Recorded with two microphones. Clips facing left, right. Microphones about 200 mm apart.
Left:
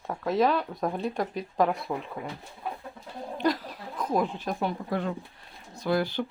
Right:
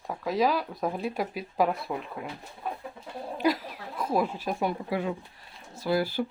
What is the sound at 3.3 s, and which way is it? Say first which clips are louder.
Speech: right 1 dB; 5° right (ahead or behind).